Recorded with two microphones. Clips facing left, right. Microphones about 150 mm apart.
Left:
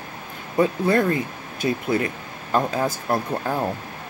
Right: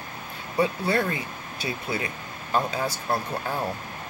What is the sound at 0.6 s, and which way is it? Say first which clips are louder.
Speech: left 5 dB; 45° left (ahead or behind).